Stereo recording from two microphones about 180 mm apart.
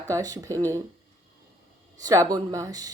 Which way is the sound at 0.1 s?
20° right (ahead or behind).